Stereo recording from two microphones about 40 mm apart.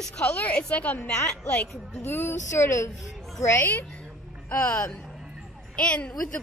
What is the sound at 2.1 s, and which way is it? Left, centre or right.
Speech, left.